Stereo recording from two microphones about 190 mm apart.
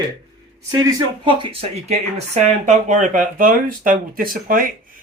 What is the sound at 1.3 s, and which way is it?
Speech, 30° right (ahead or behind).